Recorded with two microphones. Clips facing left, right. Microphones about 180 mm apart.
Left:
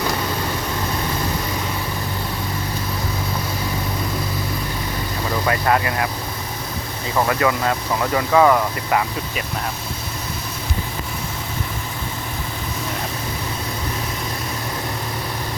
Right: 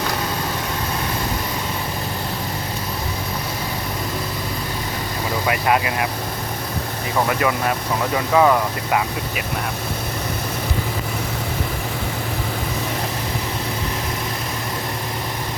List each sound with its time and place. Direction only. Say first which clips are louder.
5.5 s speech: even; 15° right (ahead or behind)
7.3 s speech: left 2 dB; 20° right (ahead or behind)